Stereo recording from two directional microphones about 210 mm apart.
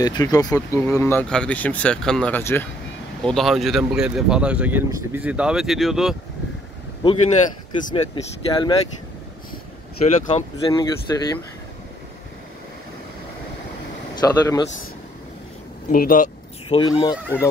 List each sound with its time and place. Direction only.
0.0 s speech: 20° left (ahead or behind); by 6.1 s centre (ahead or behind)
7.0 s speech: 25° left (ahead or behind)
10.0 s speech: 30° left (ahead or behind)
11.1 s speech: 15° left (ahead or behind)
14.1 s speech: 15° left (ahead or behind)
15.9 s speech: 40° left (ahead or behind)
16.6 s speech: 20° left (ahead or behind)